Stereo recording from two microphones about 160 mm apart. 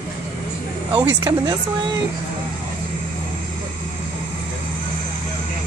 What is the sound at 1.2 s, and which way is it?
Speech, 25° right (ahead or behind).